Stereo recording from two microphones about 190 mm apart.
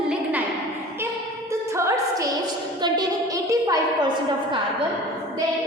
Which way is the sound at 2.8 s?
20° right (ahead or behind).